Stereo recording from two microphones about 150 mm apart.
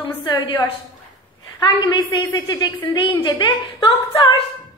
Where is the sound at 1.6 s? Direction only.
30° left (ahead or behind).